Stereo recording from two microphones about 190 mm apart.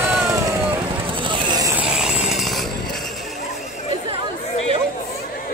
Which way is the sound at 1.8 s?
5° right (ahead or behind).